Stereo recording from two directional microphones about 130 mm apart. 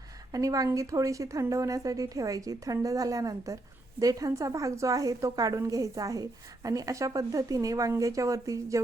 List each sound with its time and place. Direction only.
0.3 s a woman's voice: 25° right (ahead or behind)